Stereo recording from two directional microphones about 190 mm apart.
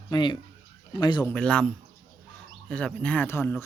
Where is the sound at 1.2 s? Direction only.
5° left (ahead or behind).